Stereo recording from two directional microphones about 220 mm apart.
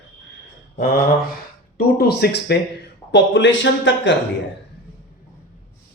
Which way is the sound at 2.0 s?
45° left (ahead or behind).